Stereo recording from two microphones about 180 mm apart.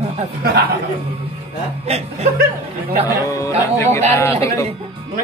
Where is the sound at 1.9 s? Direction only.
35° right (ahead or behind).